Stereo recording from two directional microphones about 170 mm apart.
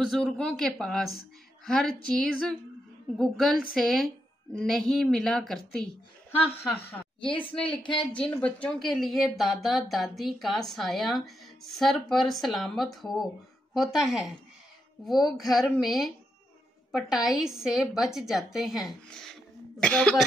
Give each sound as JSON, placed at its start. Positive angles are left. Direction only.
{"t": 0.0, "sound": "a woman's voice", "side_deg": 0}
{"t": 7.2, "sound": "speech", "side_deg": 30}
{"t": 8.0, "sound": "speech", "side_deg": 5}